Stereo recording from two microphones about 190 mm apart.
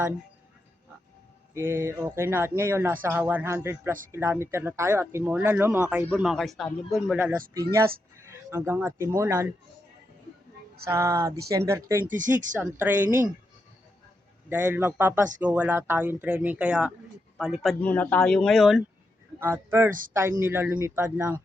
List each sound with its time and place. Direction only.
1.5 s speech: 15° right (ahead or behind)
10.8 s speech: 15° right (ahead or behind)
12.0 s speech: 45° right (ahead or behind)
12.5 s speech: 10° right (ahead or behind)
14.5 s speech: 10° right (ahead or behind)
19.4 s speech: 10° right (ahead or behind)